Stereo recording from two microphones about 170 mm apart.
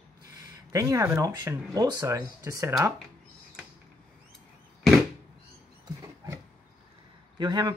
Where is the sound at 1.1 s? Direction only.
20° right (ahead or behind).